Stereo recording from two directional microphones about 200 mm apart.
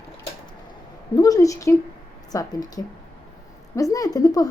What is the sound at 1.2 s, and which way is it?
Speech, 15° left (ahead or behind).